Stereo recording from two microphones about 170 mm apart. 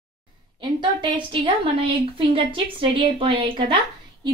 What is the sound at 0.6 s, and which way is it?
A woman's voice, 25° right (ahead or behind).